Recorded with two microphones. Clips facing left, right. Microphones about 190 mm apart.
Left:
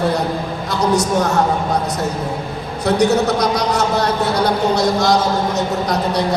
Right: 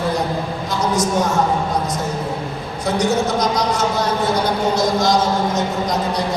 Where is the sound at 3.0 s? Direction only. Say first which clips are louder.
Left 3 dB; 65° left (ahead or behind).